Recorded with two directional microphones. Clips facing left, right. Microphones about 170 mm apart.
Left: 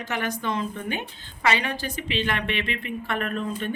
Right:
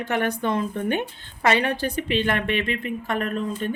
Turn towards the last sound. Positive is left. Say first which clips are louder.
# right 2 dB
turn(degrees=-35)  # may be behind; listen again after turning